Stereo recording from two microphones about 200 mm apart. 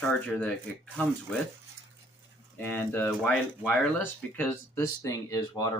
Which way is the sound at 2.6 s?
10° left (ahead or behind).